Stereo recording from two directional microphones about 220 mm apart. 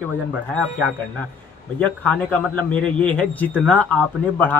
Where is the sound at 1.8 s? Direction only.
5° left (ahead or behind).